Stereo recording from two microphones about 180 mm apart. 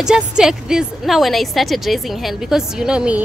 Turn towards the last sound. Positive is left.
turn(degrees=-5)  # may be behind; listen again after turning